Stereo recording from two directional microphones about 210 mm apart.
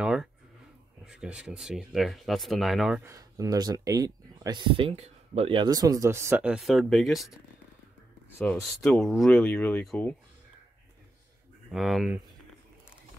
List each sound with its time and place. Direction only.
0.0 s a sound: 5° right (ahead or behind)
1.0 s speech: 5° right (ahead or behind)
3.1 s speech: 15° right (ahead or behind); by 7.3 s centre (ahead or behind)
8.4 s speech: 10° left (ahead or behind)
11.7 s speech: centre (ahead or behind)